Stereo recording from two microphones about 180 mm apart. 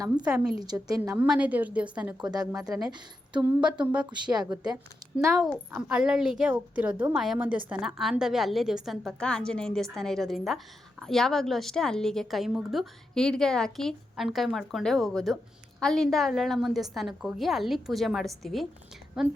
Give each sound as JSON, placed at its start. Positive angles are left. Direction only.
{"t": 0.6, "sound": "a woman's voice", "side_deg": -20}
{"t": 1.1, "sound": "a woman's voice", "side_deg": -10}